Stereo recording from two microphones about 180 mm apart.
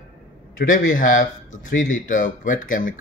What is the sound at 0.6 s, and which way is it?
Speech, 50° left (ahead or behind).